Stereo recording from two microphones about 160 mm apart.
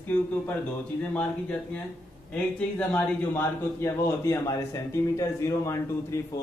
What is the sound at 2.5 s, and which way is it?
A man's voice, 10° left (ahead or behind).